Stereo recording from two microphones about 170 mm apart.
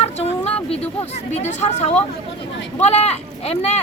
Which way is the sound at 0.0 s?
35° left (ahead or behind).